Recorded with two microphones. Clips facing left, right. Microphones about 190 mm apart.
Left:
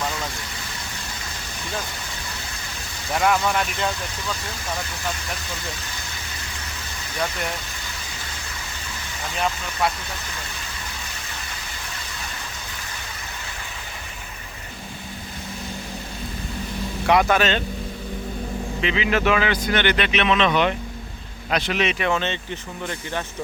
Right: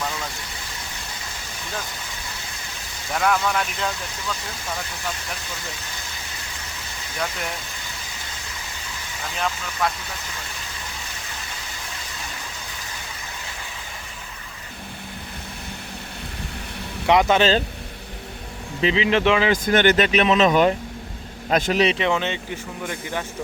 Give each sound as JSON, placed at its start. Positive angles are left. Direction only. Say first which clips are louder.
{"t": 3.1, "sound": "speech", "louder": "left 1 dB", "side_deg": 5}
{"t": 7.2, "sound": "speech", "louder": "left 2 dB", "side_deg": 0}
{"t": 17.1, "sound": "speech", "louder": "right 2 dB", "side_deg": -20}
{"t": 18.8, "sound": "speech", "louder": "right 3 dB", "side_deg": -30}
{"t": 19.6, "sound": "speech", "louder": "right 4 dB", "side_deg": -45}
{"t": 21.9, "sound": "speech", "louder": "right 1 dB", "side_deg": -20}